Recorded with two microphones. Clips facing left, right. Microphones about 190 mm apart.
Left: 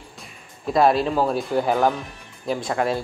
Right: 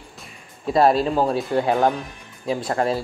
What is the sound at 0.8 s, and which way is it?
Speech, centre (ahead or behind).